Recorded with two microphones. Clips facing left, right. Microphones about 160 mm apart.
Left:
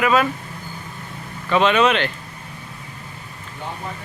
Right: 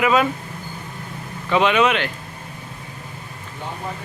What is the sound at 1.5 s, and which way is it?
Speech, 15° right (ahead or behind).